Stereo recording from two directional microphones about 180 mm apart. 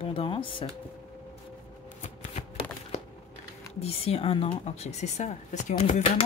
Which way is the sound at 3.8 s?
35° left (ahead or behind).